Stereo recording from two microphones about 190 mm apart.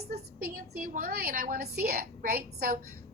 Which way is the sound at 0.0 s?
55° right (ahead or behind).